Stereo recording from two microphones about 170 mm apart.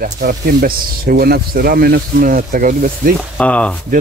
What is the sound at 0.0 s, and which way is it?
Speech, 60° right (ahead or behind).